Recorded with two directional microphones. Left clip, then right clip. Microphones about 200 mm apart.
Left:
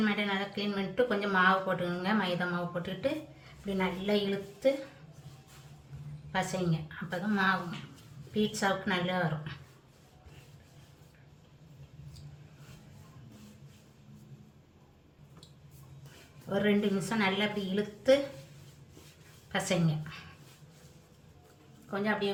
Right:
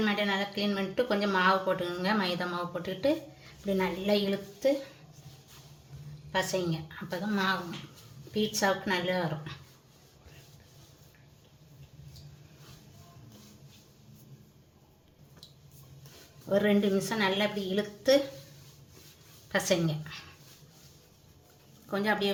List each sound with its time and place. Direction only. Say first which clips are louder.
0.0 s speech: right 2 dB; 35° right (ahead or behind)
6.3 s speech: right 3 dB; 35° right (ahead or behind)
16.5 s speech: right 3 dB; 35° right (ahead or behind)
19.5 s speech: right 4 dB; 35° right (ahead or behind)
21.8 s a woman's voice: right 3 dB; 50° right (ahead or behind)